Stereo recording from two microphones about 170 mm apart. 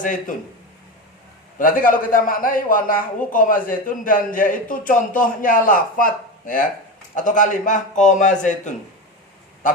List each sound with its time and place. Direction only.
0.0 s a man's voice: 50° left (ahead or behind)
1.5 s a man's voice: 55° left (ahead or behind)